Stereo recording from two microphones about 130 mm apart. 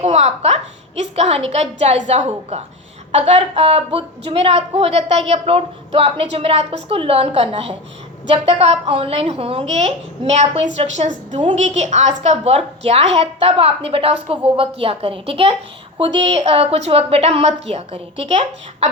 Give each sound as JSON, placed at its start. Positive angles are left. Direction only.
{"t": 0.0, "sound": "a woman's voice", "side_deg": -55}